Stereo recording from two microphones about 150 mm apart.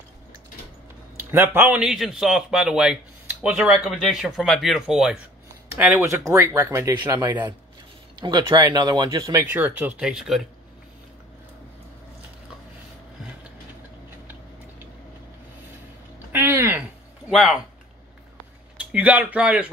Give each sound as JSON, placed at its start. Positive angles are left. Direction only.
{"t": 1.3, "sound": "a man's voice", "side_deg": -15}
{"t": 6.9, "sound": "speech", "side_deg": -30}
{"t": 8.2, "sound": "speech", "side_deg": -30}
{"t": 9.5, "sound": "speech", "side_deg": -10}
{"t": 16.3, "sound": "a sound", "side_deg": -15}
{"t": 17.3, "sound": "speech", "side_deg": 0}
{"t": 18.8, "sound": "speech", "side_deg": -10}